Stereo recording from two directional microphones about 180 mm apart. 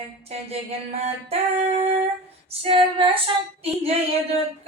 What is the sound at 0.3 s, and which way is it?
Female singing, 35° right (ahead or behind).